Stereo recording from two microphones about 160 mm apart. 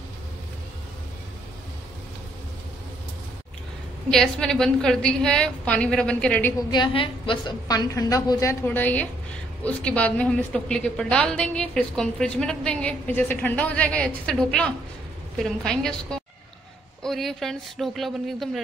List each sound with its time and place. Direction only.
4.1 s a woman's voice: 5° left (ahead or behind)
6.7 s a woman's voice: 30° left (ahead or behind); by 18.6 s centre (ahead or behind)